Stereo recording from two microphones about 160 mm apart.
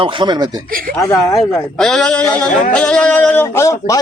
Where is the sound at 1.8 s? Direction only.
5° left (ahead or behind).